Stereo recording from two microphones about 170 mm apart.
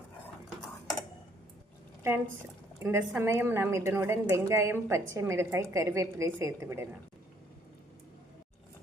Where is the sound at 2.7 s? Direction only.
15° right (ahead or behind).